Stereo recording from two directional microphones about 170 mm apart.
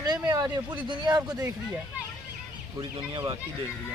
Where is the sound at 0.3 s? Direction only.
25° right (ahead or behind).